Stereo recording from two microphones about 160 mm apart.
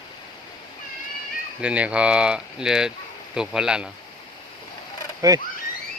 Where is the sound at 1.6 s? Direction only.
5° right (ahead or behind).